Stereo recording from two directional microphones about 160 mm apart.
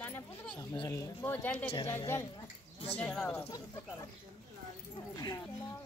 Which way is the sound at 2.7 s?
40° left (ahead or behind).